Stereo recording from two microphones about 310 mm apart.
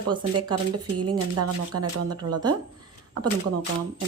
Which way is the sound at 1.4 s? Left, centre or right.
Right.